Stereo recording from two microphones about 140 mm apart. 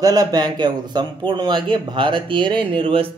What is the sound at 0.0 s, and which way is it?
A man's voice, 25° right (ahead or behind).